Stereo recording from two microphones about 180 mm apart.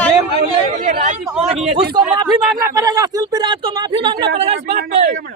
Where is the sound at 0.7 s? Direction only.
40° right (ahead or behind).